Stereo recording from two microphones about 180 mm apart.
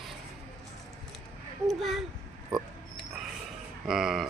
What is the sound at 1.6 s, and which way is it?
Speech, centre (ahead or behind).